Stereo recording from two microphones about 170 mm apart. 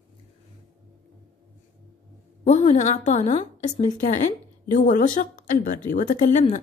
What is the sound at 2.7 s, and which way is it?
A woman's voice, 45° left (ahead or behind).